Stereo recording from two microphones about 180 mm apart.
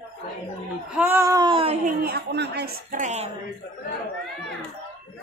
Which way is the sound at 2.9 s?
40° right (ahead or behind).